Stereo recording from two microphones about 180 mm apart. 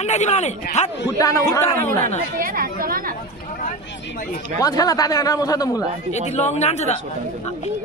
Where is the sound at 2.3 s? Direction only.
55° right (ahead or behind).